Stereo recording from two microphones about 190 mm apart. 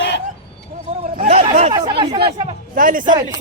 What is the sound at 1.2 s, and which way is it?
A man's voice, 35° right (ahead or behind).